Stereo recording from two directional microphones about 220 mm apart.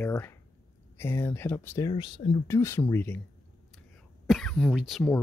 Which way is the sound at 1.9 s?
20° left (ahead or behind).